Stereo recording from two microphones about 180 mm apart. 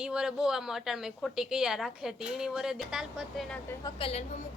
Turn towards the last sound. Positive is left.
turn(degrees=35)  # may be behind; listen again after turning